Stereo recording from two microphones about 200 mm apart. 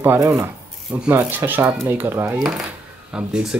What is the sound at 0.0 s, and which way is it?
Speech, 10° right (ahead or behind).